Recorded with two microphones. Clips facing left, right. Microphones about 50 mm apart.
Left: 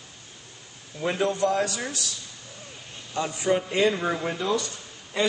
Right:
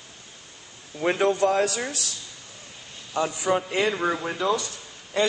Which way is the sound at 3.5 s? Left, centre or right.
Right.